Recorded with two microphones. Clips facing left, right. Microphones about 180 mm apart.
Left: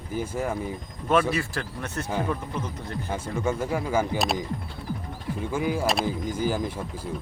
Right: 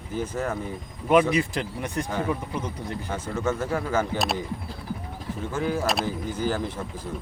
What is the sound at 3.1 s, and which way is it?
Speech, 10° left (ahead or behind).